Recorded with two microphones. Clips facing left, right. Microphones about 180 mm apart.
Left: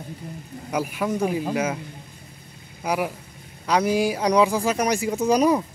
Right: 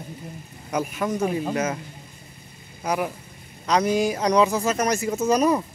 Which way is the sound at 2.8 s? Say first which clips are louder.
Even; 10° left (ahead or behind).